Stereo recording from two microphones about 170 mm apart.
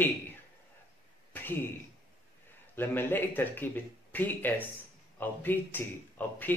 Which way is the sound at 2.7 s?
10° left (ahead or behind).